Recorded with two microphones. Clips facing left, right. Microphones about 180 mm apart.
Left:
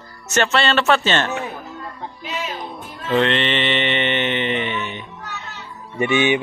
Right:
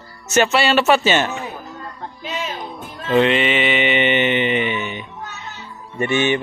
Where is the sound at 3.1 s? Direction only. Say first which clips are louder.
Right 3 dB; 5° right (ahead or behind).